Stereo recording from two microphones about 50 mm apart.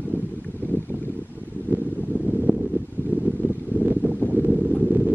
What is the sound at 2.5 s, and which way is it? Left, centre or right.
Wind noise, right.